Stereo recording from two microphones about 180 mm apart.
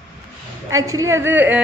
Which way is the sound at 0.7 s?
20° right (ahead or behind).